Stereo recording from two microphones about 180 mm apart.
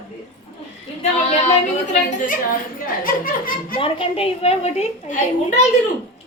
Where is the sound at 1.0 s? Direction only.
40° left (ahead or behind).